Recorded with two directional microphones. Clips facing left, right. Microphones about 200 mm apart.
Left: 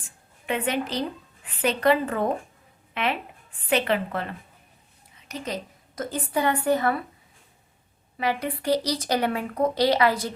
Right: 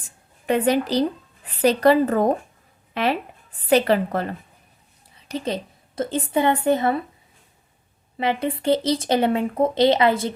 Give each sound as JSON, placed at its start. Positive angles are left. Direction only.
{"t": 0.4, "sound": "a woman's voice", "side_deg": -40}
{"t": 5.1, "sound": "a sound", "side_deg": -30}
{"t": 6.0, "sound": "speech", "side_deg": -25}
{"t": 8.2, "sound": "speech", "side_deg": -25}